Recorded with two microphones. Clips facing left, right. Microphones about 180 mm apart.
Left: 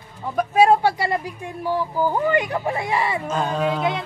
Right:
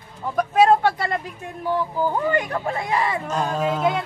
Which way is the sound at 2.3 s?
15° left (ahead or behind).